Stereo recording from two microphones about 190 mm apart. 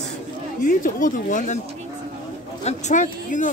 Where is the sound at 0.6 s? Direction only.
45° left (ahead or behind).